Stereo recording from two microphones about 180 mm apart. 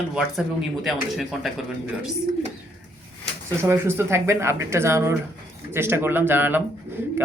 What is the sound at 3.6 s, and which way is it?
Speech, 15° right (ahead or behind).